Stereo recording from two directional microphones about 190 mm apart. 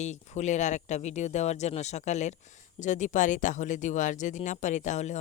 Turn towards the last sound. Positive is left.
turn(degrees=40)  # may be behind; listen again after turning